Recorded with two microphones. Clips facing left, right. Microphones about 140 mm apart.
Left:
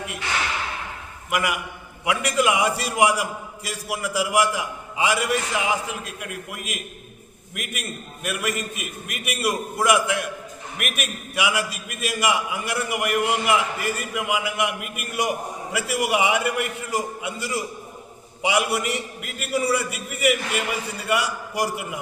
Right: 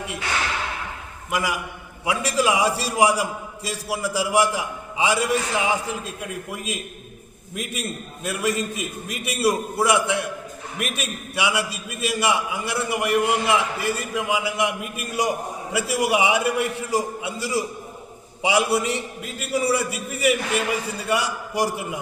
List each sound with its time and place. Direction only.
2.0 s a man's voice: 30° right (ahead or behind)